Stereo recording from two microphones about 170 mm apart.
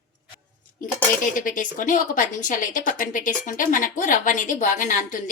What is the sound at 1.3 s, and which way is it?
A woman's voice, 50° left (ahead or behind).